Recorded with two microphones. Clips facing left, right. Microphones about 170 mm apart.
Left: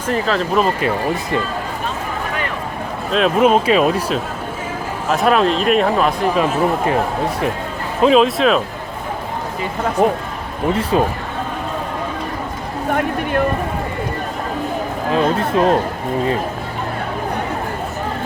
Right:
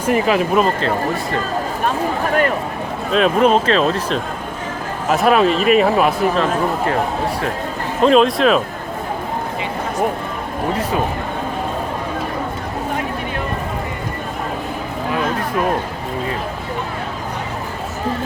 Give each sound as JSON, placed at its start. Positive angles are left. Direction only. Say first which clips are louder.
{"t": 0.0, "sound": "speech", "louder": "right 3 dB", "side_deg": -10}
{"t": 3.1, "sound": "speech", "louder": "even", "side_deg": 0}
{"t": 5.0, "sound": "speech", "louder": "right 1 dB", "side_deg": 0}
{"t": 6.3, "sound": "speech", "louder": "left 1 dB", "side_deg": 10}
{"t": 8.0, "sound": "speech", "louder": "even", "side_deg": 0}
{"t": 10.0, "sound": "speech", "louder": "left 4 dB", "side_deg": 25}
{"t": 15.1, "sound": "speech", "louder": "left 5 dB", "side_deg": 25}